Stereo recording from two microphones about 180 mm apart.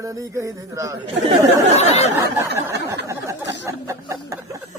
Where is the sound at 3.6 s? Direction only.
15° right (ahead or behind).